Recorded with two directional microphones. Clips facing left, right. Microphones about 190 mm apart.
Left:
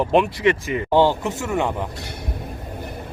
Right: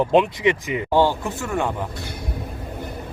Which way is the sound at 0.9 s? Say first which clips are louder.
Left 2 dB; 15° left (ahead or behind).